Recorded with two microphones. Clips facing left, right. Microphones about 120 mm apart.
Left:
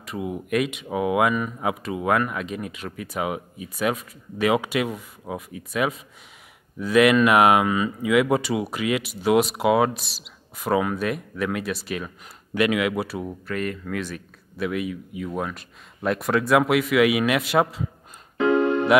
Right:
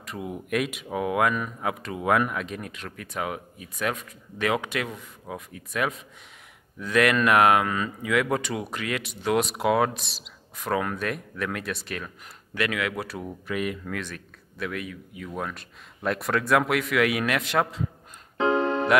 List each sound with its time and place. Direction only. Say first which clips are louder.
0.0 s speech: left 4 dB; 5° left (ahead or behind)
13.5 s speech: even; 10° right (ahead or behind)
13.8 s speech: left 4 dB; 5° left (ahead or behind)
18.4 s music: left 4 dB; 35° right (ahead or behind)